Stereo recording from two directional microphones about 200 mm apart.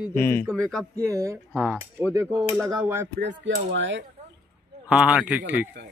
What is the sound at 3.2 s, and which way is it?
Speech, 60° right (ahead or behind).